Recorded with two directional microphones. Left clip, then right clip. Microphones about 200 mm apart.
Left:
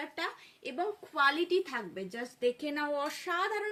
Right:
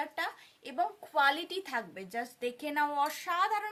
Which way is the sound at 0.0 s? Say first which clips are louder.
Right 2 dB; 55° right (ahead or behind).